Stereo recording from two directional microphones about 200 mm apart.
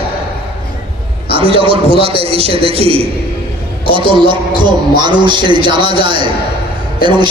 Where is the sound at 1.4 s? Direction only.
25° right (ahead or behind).